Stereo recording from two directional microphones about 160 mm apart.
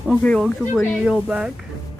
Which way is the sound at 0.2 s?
5° left (ahead or behind).